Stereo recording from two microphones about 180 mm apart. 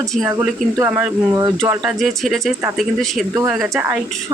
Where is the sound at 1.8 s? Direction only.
Centre (ahead or behind).